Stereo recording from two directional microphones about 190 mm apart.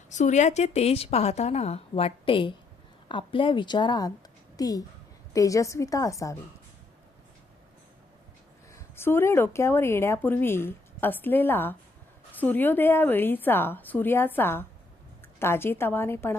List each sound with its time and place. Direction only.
0.1 s a woman's voice: 40° left (ahead or behind); by 6.3 s 15° left (ahead or behind)
8.7 s speech: 10° left (ahead or behind)